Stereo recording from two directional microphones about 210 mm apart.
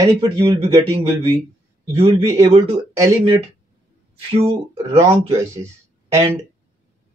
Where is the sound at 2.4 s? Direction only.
20° right (ahead or behind).